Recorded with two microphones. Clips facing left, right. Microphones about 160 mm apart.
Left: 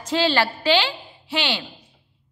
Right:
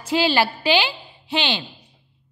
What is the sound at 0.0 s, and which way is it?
A woman's voice, 15° right (ahead or behind).